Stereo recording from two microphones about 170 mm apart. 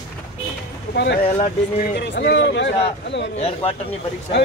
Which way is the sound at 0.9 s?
90° left.